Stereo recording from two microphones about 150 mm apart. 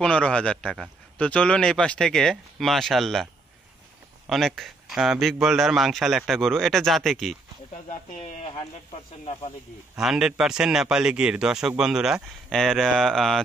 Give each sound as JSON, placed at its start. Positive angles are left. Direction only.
{"t": 0.0, "sound": "a man's voice", "side_deg": 5}
{"t": 4.3, "sound": "a man's voice", "side_deg": 0}
{"t": 7.7, "sound": "speech", "side_deg": 55}
{"t": 9.2, "sound": "speech", "side_deg": 40}
{"t": 9.9, "sound": "a man's voice", "side_deg": -5}